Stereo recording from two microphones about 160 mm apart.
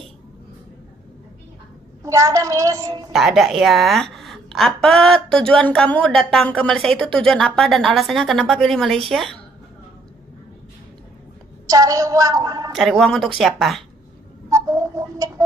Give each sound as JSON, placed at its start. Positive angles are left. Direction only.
{"t": 2.0, "sound": "a woman's voice", "side_deg": -20}
{"t": 3.1, "sound": "a woman's voice", "side_deg": 0}
{"t": 11.7, "sound": "a woman's voice", "side_deg": -20}
{"t": 12.7, "sound": "a woman's voice", "side_deg": 0}
{"t": 14.5, "sound": "bird", "side_deg": -20}